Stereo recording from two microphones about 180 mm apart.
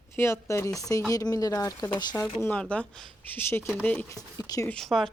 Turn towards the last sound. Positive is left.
turn(degrees=0)  # may be behind; listen again after turning